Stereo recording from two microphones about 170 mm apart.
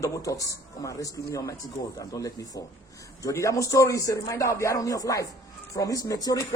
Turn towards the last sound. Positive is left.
turn(degrees=20)  # may be behind; listen again after turning